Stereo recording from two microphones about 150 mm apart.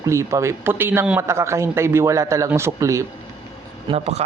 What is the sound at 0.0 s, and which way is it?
A man's voice, 20° right (ahead or behind).